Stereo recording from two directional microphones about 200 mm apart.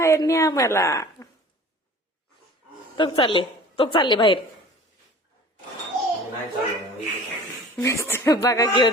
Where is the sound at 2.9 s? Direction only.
25° left (ahead or behind).